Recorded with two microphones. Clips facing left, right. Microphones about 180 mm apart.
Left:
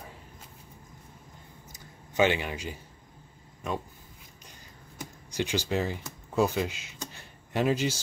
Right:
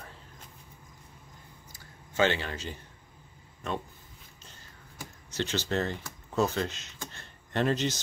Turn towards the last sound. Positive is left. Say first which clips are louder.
# left 1 dB
turn(degrees=10)  # may be behind; listen again after turning